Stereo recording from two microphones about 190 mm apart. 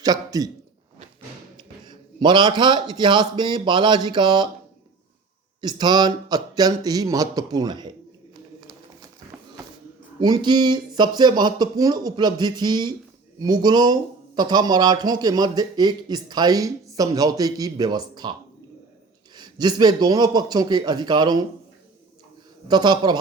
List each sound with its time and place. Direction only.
0.0 s a man's voice: 20° right (ahead or behind)
1.5 s a man's voice: 25° right (ahead or behind)
5.6 s speech: 25° right (ahead or behind)
10.2 s speech: 20° right (ahead or behind)
19.4 s speech: 20° right (ahead or behind)
22.7 s speech: 20° right (ahead or behind)